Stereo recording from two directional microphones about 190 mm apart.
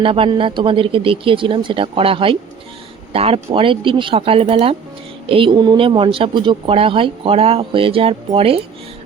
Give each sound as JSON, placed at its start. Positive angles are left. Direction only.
{"t": 0.0, "sound": "speech", "side_deg": -30}